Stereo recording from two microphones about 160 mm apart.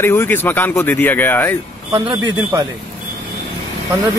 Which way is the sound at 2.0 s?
25° right (ahead or behind).